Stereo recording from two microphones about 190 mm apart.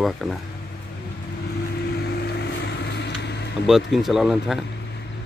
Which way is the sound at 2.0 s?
60° left (ahead or behind).